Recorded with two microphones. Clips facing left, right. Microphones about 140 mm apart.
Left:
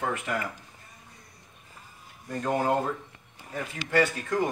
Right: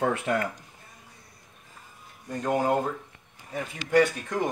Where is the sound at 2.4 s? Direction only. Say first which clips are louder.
Right 1 dB; 5° right (ahead or behind).